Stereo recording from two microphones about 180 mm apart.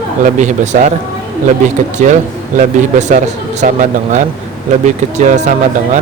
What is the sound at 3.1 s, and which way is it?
Speech, 40° right (ahead or behind).